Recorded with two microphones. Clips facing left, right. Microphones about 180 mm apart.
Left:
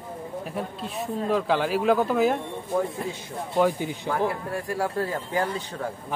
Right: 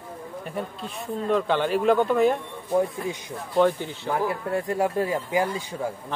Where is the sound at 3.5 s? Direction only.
10° left (ahead or behind).